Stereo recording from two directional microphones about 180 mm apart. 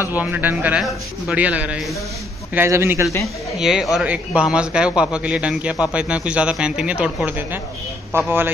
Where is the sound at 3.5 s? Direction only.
5° right (ahead or behind).